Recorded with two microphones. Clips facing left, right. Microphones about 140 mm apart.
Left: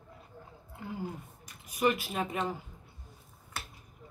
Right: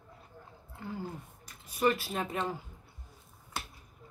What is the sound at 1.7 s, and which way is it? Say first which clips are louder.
Speech: even; 15° left (ahead or behind).